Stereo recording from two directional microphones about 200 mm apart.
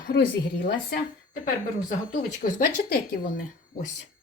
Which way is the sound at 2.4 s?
40° left (ahead or behind).